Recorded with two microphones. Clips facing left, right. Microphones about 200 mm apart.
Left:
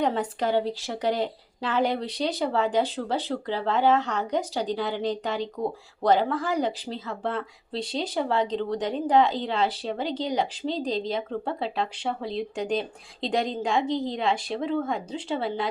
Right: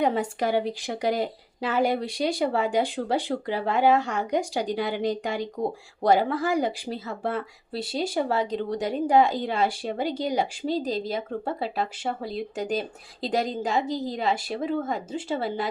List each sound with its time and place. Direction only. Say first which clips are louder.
0.0 s a woman's voice: right 1 dB; 10° right (ahead or behind)